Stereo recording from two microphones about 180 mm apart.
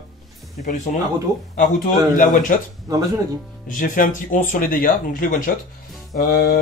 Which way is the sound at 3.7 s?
50° left (ahead or behind).